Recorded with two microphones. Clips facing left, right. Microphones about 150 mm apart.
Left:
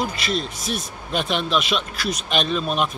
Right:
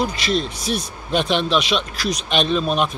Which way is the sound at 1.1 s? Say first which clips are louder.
Right 4 dB; 5° left (ahead or behind).